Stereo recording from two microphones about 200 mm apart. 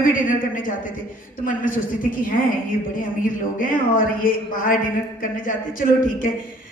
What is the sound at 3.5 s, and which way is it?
A woman's voice, 45° left (ahead or behind).